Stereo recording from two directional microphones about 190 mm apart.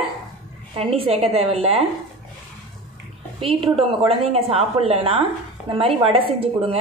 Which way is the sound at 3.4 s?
30° right (ahead or behind).